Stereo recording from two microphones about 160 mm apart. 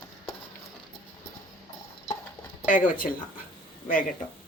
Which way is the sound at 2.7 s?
55° left (ahead or behind).